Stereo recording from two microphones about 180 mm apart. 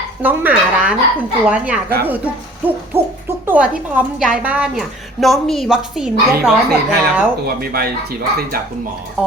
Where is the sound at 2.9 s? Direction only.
15° right (ahead or behind).